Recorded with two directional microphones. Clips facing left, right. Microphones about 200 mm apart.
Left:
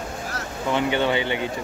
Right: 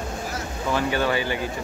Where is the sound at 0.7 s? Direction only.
20° left (ahead or behind).